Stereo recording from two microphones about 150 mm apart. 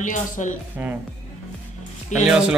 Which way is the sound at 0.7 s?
10° right (ahead or behind).